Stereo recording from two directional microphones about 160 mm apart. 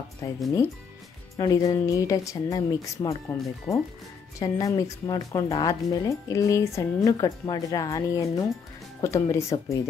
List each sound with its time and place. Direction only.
0.2 s speech: 20° left (ahead or behind)